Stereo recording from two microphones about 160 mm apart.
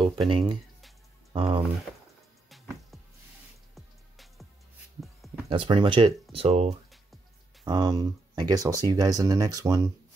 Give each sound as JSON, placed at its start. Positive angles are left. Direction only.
{"t": 0.3, "sound": "speech", "side_deg": -30}
{"t": 2.5, "sound": "music", "side_deg": 0}
{"t": 5.0, "sound": "a sound", "side_deg": 0}
{"t": 5.5, "sound": "speech", "side_deg": -30}
{"t": 7.6, "sound": "speech", "side_deg": -25}